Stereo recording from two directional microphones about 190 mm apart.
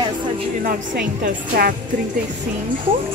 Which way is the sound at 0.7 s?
50° right (ahead or behind).